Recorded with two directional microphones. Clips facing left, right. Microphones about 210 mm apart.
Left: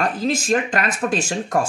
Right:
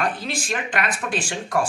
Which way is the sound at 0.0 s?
40° left (ahead or behind).